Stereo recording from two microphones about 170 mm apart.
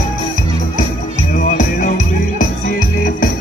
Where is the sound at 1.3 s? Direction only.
50° left (ahead or behind).